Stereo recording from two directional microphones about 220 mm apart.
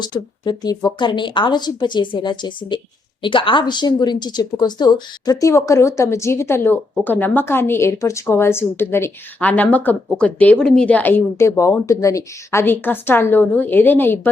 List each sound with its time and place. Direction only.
0.0 s a woman's voice: 20° left (ahead or behind)